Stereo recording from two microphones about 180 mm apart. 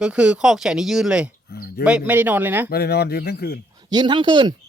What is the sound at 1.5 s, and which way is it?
Speech, 60° left (ahead or behind).